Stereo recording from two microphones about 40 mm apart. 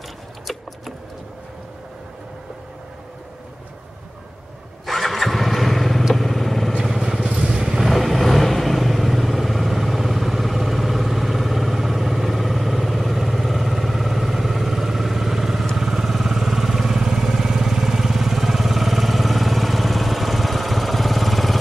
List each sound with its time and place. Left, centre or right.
4.8 s vehicle: centre
6.8 s vehicle: centre
7.7 s vehicle: centre